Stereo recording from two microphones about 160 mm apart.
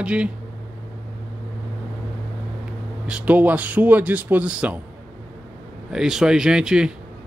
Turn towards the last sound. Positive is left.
turn(degrees=-5)  # may be behind; listen again after turning